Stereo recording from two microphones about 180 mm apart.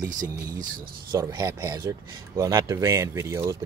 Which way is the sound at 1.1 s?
20° right (ahead or behind).